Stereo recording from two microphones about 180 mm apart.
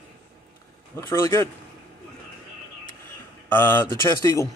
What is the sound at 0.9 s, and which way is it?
Speech, 15° left (ahead or behind).